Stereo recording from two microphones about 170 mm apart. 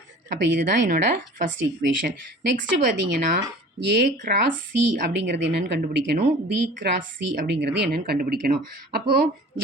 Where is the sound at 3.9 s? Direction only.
65° right (ahead or behind).